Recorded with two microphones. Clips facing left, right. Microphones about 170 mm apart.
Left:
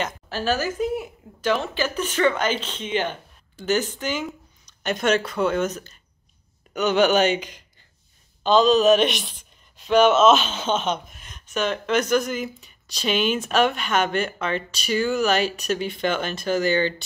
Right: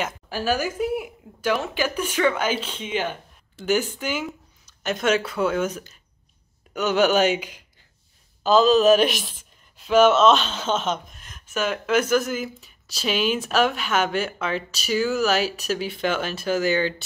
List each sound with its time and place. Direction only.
0.0 s a woman's voice: 10° right (ahead or behind)